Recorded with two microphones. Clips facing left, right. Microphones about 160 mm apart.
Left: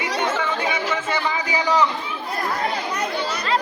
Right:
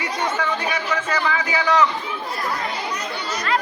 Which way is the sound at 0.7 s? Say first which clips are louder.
Even; 20° left (ahead or behind).